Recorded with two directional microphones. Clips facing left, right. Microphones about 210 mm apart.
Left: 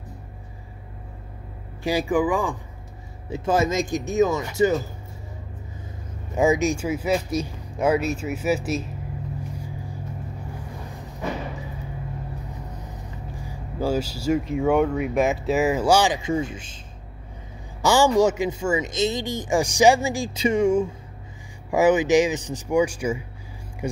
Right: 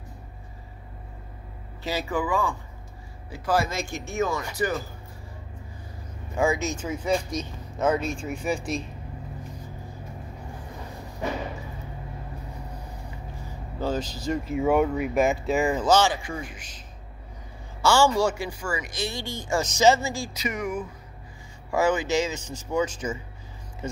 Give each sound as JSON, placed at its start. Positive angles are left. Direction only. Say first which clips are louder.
{"t": 1.8, "sound": "speech", "louder": "left 6 dB", "side_deg": 15}
{"t": 6.3, "sound": "speech", "louder": "left 5 dB", "side_deg": 20}
{"t": 13.4, "sound": "vehicle", "louder": "left 4 dB", "side_deg": 10}
{"t": 14.4, "sound": "speech", "louder": "right 1 dB", "side_deg": -5}
{"t": 17.8, "sound": "speech", "louder": "left 3 dB", "side_deg": 15}
{"t": 20.3, "sound": "speech", "louder": "left 14 dB", "side_deg": 30}
{"t": 21.6, "sound": "speech", "louder": "left 6 dB", "side_deg": 15}